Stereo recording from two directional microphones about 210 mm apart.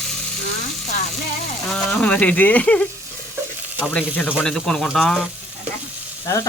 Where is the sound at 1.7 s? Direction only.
5° left (ahead or behind).